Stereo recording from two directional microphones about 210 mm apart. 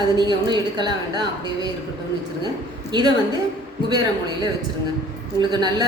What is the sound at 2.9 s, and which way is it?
Speech, 20° right (ahead or behind).